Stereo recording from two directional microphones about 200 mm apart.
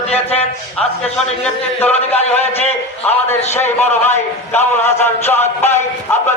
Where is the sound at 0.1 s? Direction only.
30° left (ahead or behind).